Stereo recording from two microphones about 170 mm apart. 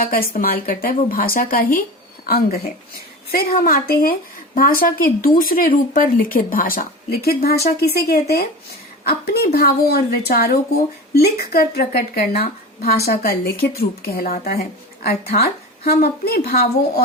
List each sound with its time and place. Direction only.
0.0 s speech: 60° left (ahead or behind)